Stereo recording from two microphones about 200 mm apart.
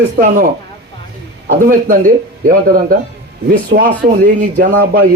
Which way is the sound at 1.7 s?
45° right (ahead or behind).